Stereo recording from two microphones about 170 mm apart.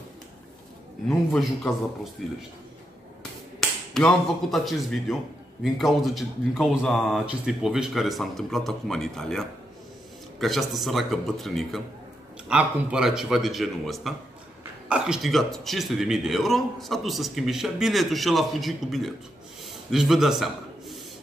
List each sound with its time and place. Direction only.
1.0 s a man's voice: 5° left (ahead or behind)
3.9 s a man's voice: centre (ahead or behind)